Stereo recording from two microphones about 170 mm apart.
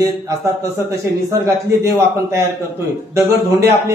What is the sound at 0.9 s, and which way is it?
A man's voice, 20° right (ahead or behind).